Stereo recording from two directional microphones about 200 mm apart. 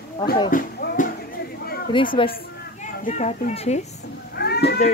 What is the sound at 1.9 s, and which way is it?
Speech, 25° left (ahead or behind).